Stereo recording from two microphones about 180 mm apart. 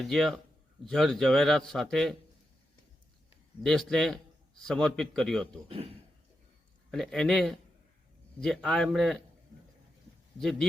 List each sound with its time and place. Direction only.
0.0 s a man's voice: centre (ahead or behind)
3.6 s a man's voice: centre (ahead or behind)
5.6 s a man's voice: 30° right (ahead or behind)
6.9 s a man's voice: centre (ahead or behind)
10.4 s a man's voice: centre (ahead or behind)